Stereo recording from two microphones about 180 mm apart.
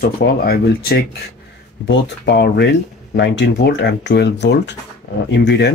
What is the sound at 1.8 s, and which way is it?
Speech, 75° left (ahead or behind).